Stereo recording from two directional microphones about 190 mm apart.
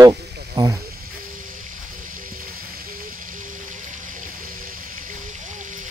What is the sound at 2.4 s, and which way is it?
Music, 50° right (ahead or behind).